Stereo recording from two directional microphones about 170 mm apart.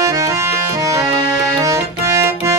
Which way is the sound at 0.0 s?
15° right (ahead or behind).